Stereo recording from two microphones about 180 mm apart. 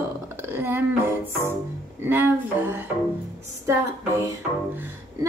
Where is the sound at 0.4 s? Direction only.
15° right (ahead or behind).